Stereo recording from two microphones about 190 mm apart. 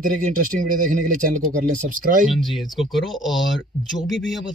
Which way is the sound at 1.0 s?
45° right (ahead or behind).